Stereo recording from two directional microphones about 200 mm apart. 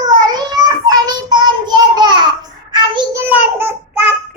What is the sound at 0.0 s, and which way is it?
Child singing, 20° right (ahead or behind).